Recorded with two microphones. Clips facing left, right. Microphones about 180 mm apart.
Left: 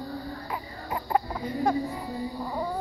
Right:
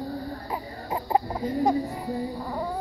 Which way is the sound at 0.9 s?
25° right (ahead or behind).